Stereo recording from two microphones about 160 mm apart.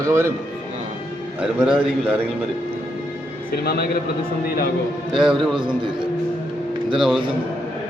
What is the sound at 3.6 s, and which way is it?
Speech, 75° left (ahead or behind).